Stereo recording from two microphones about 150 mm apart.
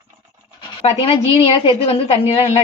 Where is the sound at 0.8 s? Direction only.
45° left (ahead or behind).